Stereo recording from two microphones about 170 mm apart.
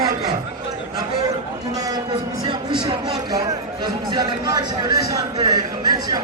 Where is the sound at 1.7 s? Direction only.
20° right (ahead or behind).